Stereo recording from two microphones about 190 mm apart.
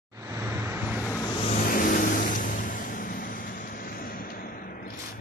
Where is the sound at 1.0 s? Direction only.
15° left (ahead or behind).